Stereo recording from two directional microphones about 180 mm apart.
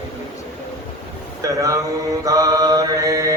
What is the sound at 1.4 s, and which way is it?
Mantra, 20° right (ahead or behind).